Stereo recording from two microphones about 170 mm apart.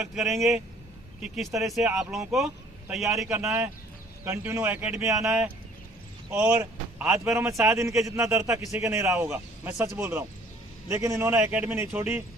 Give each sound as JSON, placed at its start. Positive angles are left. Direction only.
{"t": 0.0, "sound": "speech", "side_deg": 0}
{"t": 4.2, "sound": "a man's voice", "side_deg": -10}
{"t": 6.3, "sound": "a man's voice", "side_deg": -15}